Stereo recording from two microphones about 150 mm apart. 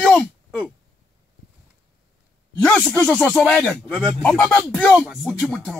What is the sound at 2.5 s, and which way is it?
A man's voice, 5° left (ahead or behind).